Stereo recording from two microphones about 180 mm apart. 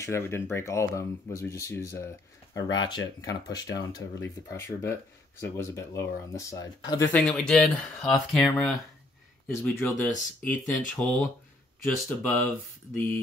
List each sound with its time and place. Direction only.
0.0 s speech: 15° left (ahead or behind)
7.1 s speech: 5° left (ahead or behind)
9.6 s speech: 15° left (ahead or behind)